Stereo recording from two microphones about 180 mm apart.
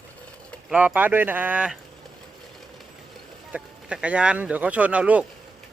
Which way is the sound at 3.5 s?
5° right (ahead or behind).